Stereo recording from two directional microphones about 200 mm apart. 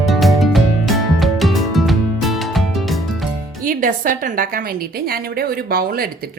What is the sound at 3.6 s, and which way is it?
A woman's voice, 40° right (ahead or behind).